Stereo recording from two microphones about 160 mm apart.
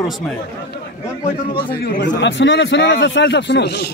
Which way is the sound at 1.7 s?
70° left (ahead or behind).